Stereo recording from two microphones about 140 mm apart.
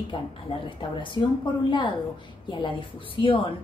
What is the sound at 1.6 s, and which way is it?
A woman's voice, 35° left (ahead or behind).